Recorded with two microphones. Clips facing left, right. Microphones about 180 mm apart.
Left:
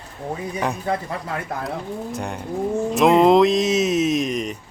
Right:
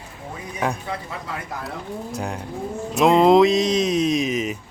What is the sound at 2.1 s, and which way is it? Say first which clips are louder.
Speech: left 3 dB; centre (ahead or behind).